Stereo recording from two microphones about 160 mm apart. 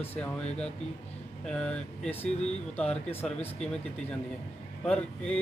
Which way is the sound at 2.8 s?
10° left (ahead or behind).